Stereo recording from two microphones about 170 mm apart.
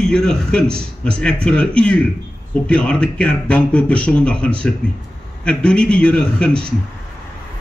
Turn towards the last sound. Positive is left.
turn(degrees=5)  # may be behind; listen again after turning